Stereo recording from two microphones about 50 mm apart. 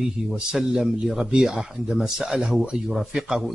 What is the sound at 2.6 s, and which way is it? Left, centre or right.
Speech, centre.